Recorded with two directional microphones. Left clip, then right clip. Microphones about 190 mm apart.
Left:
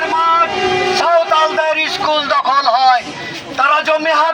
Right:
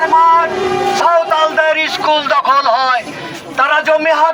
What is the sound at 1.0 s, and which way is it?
A man's voice, 30° right (ahead or behind).